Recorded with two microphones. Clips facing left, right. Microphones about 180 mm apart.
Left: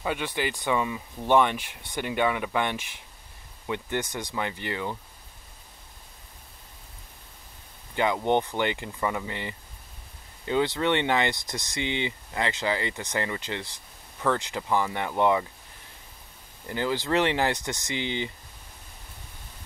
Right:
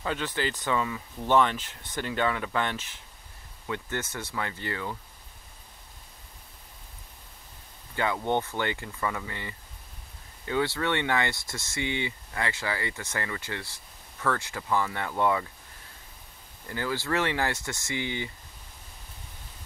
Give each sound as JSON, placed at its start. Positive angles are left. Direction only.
{"t": 0.0, "sound": "speech", "side_deg": 15}
{"t": 7.9, "sound": "speech", "side_deg": 20}
{"t": 16.6, "sound": "speech", "side_deg": 20}